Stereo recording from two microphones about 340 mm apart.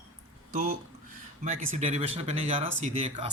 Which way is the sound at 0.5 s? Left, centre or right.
Right.